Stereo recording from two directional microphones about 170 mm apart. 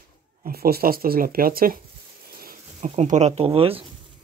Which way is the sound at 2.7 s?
45° right (ahead or behind).